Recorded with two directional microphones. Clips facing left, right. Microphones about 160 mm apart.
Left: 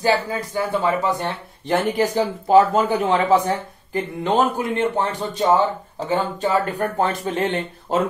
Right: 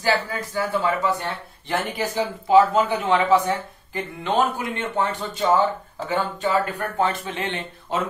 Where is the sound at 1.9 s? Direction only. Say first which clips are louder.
Left 5 dB; 45° left (ahead or behind).